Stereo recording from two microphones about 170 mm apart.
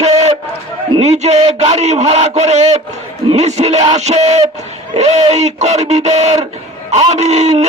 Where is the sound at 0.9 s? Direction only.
40° right (ahead or behind).